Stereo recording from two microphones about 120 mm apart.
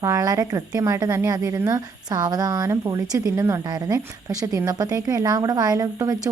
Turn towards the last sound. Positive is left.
turn(degrees=-30)  # may be behind; listen again after turning